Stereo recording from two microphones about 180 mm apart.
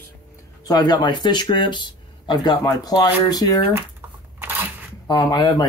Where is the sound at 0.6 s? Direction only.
20° left (ahead or behind).